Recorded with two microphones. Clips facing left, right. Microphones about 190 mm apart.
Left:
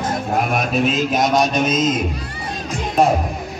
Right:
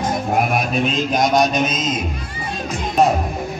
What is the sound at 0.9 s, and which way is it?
Speech, 5° left (ahead or behind).